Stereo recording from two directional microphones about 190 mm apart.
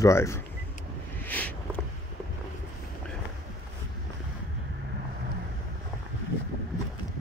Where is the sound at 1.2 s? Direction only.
10° left (ahead or behind).